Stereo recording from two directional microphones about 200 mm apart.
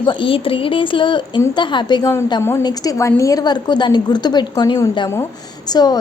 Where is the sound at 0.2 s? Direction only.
25° left (ahead or behind).